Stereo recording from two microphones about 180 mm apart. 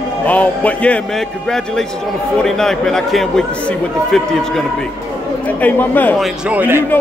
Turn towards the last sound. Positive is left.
turn(degrees=-10)  # may be behind; listen again after turning